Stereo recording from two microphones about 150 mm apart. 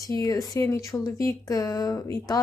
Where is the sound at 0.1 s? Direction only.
25° left (ahead or behind).